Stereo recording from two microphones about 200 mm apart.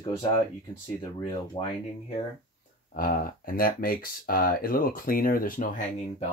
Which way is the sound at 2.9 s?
45° left (ahead or behind).